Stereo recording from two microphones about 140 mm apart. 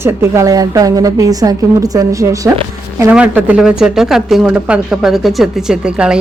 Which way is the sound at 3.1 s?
10° right (ahead or behind).